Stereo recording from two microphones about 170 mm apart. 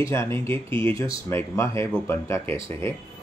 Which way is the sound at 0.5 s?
30° right (ahead or behind).